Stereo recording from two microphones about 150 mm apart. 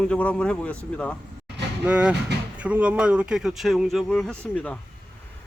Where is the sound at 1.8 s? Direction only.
5° right (ahead or behind).